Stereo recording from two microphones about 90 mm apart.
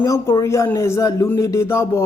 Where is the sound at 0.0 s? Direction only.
35° left (ahead or behind).